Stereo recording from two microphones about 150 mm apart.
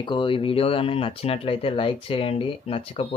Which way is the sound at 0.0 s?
35° left (ahead or behind).